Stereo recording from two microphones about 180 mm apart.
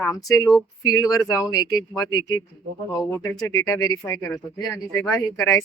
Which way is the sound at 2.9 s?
5° left (ahead or behind).